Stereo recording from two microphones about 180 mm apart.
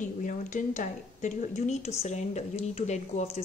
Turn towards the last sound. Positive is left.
turn(degrees=40)  # may be behind; listen again after turning